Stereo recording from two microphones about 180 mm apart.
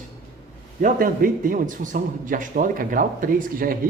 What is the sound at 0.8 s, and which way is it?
A man's voice, 50° right (ahead or behind).